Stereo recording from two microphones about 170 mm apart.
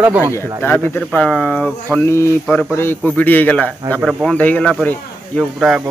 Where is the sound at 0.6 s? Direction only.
10° left (ahead or behind).